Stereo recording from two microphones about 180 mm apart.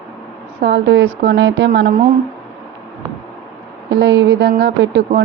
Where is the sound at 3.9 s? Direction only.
75° right (ahead or behind).